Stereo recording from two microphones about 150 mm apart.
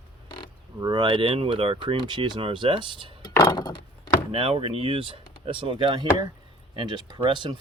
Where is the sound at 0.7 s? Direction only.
30° right (ahead or behind).